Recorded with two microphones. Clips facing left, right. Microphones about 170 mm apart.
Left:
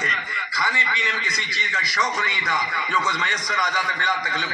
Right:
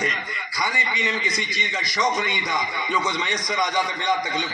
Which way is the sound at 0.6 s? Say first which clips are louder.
Right 1 dB; 15° right (ahead or behind).